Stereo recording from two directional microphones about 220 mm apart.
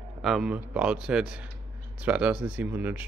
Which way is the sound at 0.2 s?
Centre (ahead or behind).